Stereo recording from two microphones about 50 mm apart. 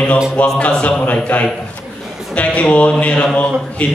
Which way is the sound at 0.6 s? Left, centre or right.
Left.